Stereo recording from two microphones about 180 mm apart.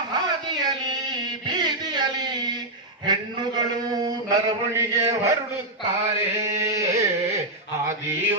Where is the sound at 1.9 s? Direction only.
25° right (ahead or behind).